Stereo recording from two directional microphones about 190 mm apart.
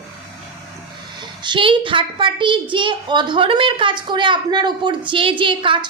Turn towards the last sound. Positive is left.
turn(degrees=-25)  # may be behind; listen again after turning